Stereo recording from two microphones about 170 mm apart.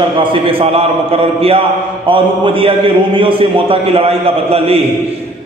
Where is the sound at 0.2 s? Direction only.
30° right (ahead or behind).